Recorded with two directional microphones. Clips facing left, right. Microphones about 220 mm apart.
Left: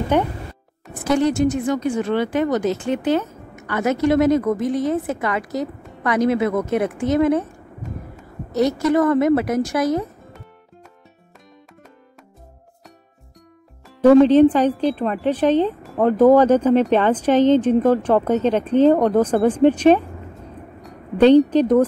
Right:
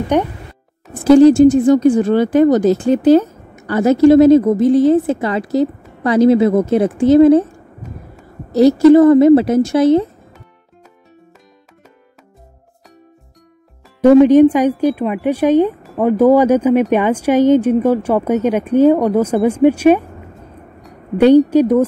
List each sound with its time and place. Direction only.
0.1 s a woman's voice: 15° right (ahead or behind)
1.0 s speech: 30° right (ahead or behind)
8.5 s a woman's voice: 30° right (ahead or behind)
14.0 s a woman's voice: 15° right (ahead or behind)
21.2 s a woman's voice: 10° right (ahead or behind)